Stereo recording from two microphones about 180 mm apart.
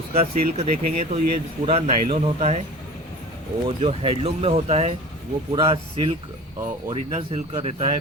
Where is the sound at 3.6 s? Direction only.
30° right (ahead or behind).